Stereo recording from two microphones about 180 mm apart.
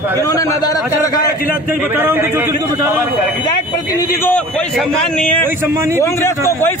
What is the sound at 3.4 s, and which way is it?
Speech, 20° left (ahead or behind).